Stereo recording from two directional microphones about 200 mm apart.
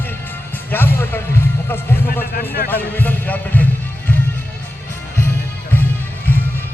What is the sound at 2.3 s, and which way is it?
Speech, 50° left (ahead or behind).